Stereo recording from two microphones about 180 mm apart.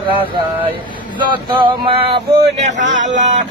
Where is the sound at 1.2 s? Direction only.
25° right (ahead or behind).